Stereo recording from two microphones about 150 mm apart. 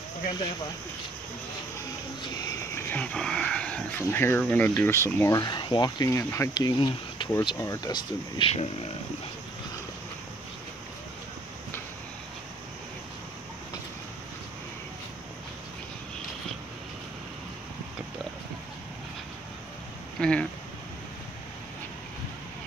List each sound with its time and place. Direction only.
2.4 s speech: 15° left (ahead or behind)
5.4 s speech: 30° left (ahead or behind)
20.2 s a sound: 5° left (ahead or behind)